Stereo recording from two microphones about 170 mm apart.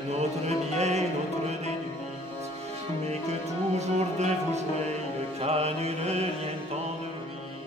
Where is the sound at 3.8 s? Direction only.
40° right (ahead or behind).